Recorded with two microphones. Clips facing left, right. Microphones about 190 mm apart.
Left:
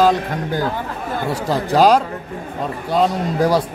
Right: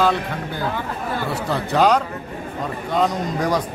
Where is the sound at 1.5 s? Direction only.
35° left (ahead or behind).